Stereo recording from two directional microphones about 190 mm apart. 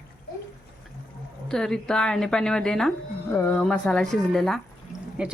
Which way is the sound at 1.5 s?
5° left (ahead or behind).